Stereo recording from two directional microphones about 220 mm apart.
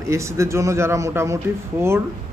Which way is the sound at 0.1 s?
15° right (ahead or behind).